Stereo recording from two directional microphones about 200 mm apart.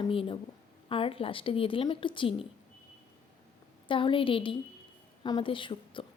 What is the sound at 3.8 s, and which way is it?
A woman's voice, 25° left (ahead or behind).